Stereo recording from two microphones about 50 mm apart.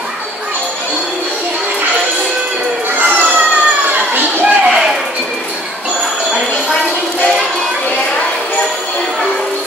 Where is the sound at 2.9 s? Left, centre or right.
Right.